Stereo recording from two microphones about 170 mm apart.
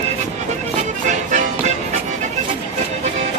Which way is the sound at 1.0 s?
45° right (ahead or behind).